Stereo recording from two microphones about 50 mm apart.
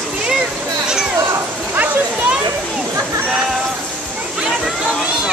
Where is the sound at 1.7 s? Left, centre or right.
Right.